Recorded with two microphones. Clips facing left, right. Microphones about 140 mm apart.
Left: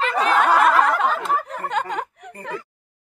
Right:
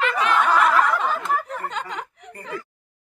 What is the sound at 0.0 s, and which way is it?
Snicker, 35° left (ahead or behind).